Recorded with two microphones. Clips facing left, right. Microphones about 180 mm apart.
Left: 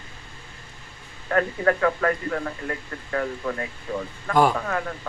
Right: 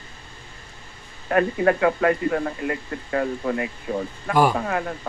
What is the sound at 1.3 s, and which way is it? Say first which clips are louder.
A man's voice: right 3 dB; 20° right (ahead or behind).